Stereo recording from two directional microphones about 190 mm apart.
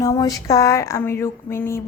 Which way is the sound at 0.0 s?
20° left (ahead or behind).